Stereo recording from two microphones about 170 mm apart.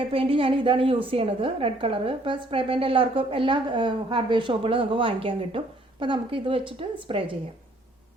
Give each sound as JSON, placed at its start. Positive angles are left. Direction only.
{"t": 0.0, "sound": "a woman's voice", "side_deg": -30}